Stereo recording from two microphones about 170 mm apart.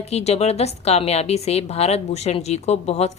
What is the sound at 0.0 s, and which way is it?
A woman's voice, 40° left (ahead or behind).